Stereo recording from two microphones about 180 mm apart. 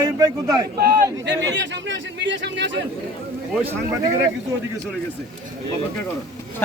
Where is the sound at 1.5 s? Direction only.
75° right (ahead or behind).